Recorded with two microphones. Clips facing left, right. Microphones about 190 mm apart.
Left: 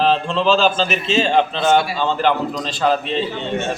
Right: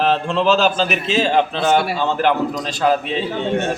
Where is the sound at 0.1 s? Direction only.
10° right (ahead or behind).